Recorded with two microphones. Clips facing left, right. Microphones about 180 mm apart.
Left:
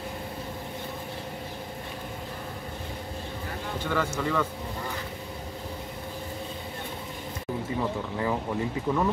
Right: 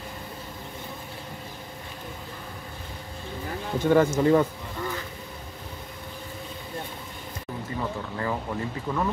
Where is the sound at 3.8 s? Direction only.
45° right (ahead or behind).